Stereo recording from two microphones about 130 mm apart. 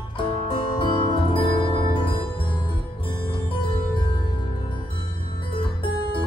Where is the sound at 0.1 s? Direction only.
40° left (ahead or behind).